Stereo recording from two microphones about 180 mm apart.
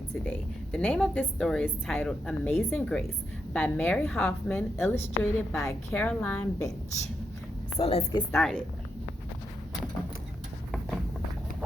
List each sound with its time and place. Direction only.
0.3 s a woman's voice: 10° left (ahead or behind)
7.8 s a woman's voice: 35° left (ahead or behind)
8.3 s a woman's voice: 5° left (ahead or behind)
10.7 s a sound: centre (ahead or behind)